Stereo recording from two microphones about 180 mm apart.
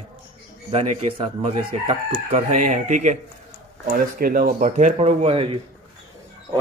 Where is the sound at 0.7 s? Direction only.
30° right (ahead or behind).